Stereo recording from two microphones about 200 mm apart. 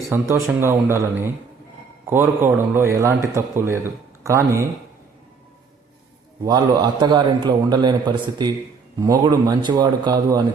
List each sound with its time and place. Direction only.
0.1 s a man's voice: 15° right (ahead or behind)
6.4 s a man's voice: 20° right (ahead or behind)